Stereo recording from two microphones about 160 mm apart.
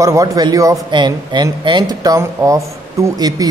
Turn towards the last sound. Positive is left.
turn(degrees=-20)  # may be behind; listen again after turning